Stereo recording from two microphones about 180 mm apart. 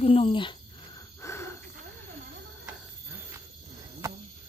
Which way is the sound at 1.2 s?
15° left (ahead or behind).